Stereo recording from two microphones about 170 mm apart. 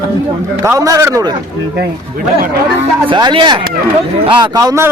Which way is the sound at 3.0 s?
30° right (ahead or behind).